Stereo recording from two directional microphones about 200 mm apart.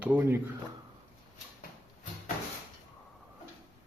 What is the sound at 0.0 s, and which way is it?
Speech, 10° right (ahead or behind).